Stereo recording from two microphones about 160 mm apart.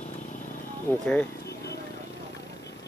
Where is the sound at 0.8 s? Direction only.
10° left (ahead or behind).